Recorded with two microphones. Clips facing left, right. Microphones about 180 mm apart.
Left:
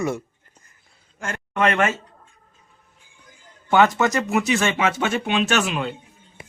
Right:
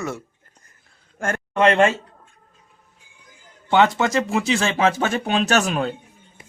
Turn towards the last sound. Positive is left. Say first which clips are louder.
# right 2 dB
turn(degrees=-40)  # may be behind; listen again after turning